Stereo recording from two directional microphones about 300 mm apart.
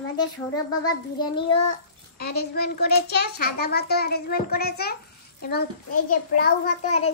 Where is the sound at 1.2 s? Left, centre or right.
Centre.